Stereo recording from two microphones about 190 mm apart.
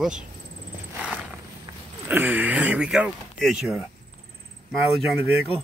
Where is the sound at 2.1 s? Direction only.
10° right (ahead or behind).